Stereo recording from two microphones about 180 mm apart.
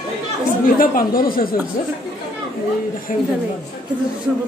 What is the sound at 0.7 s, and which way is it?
Speech, 50° left (ahead or behind).